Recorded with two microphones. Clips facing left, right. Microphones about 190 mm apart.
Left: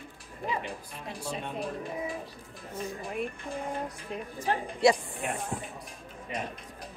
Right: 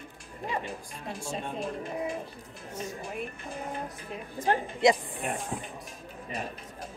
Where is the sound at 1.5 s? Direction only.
Centre (ahead or behind).